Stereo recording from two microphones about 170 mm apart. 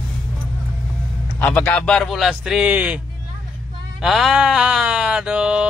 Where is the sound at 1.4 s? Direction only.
10° left (ahead or behind); by 3.0 s 10° right (ahead or behind).